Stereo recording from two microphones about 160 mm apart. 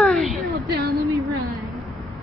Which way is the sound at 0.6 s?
80° right.